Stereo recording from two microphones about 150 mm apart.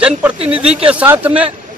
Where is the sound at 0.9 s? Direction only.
10° right (ahead or behind).